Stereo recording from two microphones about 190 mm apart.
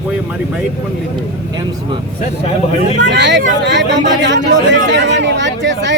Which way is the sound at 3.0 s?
65° right (ahead or behind).